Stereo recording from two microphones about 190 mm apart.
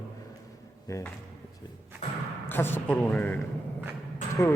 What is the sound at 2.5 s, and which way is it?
Speech, 10° left (ahead or behind).